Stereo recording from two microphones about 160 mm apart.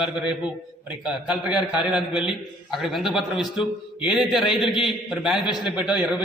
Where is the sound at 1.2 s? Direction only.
5° right (ahead or behind).